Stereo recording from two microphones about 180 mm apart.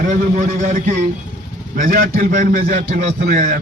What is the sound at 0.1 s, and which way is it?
A man's voice, 45° right (ahead or behind).